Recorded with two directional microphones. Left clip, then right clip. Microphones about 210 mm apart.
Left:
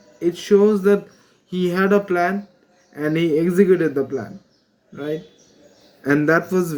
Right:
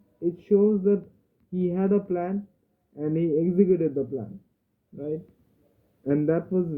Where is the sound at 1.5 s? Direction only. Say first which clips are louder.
Left 7 dB; 20° left (ahead or behind).